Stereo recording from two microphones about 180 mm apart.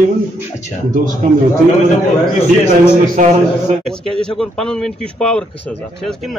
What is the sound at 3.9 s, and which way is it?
Speech, 5° left (ahead or behind).